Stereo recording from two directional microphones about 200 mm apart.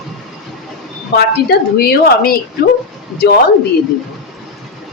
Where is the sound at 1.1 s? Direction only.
50° left (ahead or behind).